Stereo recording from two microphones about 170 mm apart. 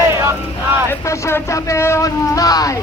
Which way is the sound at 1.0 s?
15° left (ahead or behind).